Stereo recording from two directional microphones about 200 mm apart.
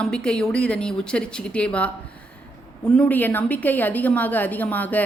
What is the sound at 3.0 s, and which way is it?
A woman's voice, 10° left (ahead or behind).